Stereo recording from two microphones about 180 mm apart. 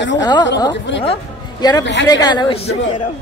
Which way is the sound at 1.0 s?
35° left (ahead or behind).